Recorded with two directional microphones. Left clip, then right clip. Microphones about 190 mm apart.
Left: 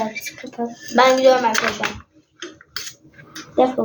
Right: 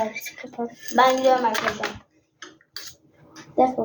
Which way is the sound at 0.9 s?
20° left (ahead or behind).